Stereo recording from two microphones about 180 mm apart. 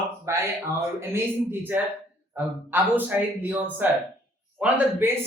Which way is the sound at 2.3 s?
10° right (ahead or behind).